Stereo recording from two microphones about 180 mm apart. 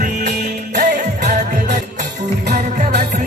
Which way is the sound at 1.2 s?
40° right (ahead or behind).